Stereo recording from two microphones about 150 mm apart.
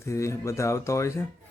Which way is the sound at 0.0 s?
20° left (ahead or behind).